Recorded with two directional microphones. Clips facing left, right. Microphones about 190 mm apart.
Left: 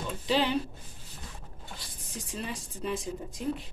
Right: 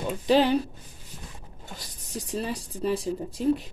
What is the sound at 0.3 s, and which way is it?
Speech, 45° right (ahead or behind).